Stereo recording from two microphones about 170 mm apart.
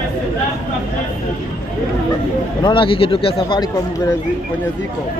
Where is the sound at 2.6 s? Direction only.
30° left (ahead or behind).